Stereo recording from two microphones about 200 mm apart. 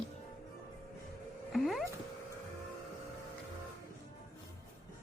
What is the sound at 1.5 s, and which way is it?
Music, centre (ahead or behind).